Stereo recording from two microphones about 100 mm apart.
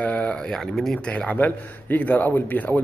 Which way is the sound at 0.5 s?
5° left (ahead or behind).